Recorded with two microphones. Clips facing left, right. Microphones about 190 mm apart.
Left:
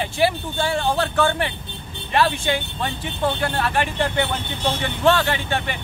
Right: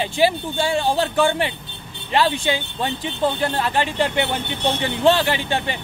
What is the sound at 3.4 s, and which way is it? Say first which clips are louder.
Speech: right 1 dB; 25° right (ahead or behind).